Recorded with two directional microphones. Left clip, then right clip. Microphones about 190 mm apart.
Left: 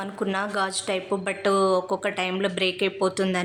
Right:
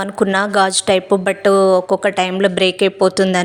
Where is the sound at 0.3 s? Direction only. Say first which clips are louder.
Right 12 dB; 40° right (ahead or behind).